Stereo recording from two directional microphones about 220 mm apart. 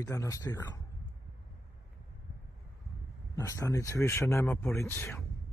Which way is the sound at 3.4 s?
15° left (ahead or behind).